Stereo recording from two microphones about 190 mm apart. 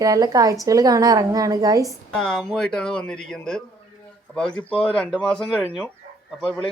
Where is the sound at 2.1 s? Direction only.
5° left (ahead or behind).